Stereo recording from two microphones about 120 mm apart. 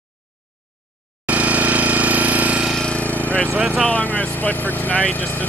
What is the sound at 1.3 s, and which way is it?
Jackhammer, 10° right (ahead or behind).